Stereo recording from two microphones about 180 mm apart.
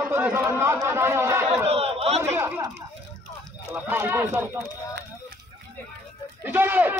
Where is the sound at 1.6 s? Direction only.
35° right (ahead or behind).